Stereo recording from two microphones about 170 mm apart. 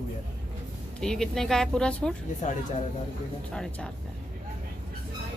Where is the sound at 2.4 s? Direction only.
45° left (ahead or behind).